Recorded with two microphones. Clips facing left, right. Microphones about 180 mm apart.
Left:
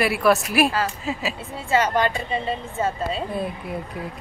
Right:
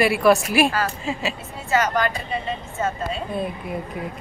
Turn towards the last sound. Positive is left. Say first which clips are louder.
# right 1 dB
turn(degrees=0)  # may be behind; listen again after turning